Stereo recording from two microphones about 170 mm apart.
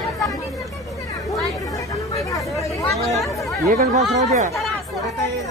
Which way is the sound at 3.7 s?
45° right (ahead or behind).